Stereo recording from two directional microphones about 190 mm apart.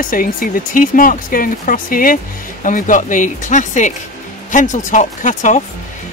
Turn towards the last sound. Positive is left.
turn(degrees=40)  # may be behind; listen again after turning